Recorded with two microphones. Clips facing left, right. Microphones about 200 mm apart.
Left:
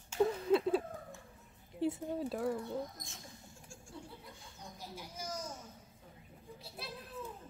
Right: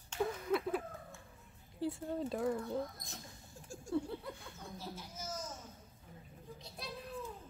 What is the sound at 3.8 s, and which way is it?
Laughter, 60° right (ahead or behind).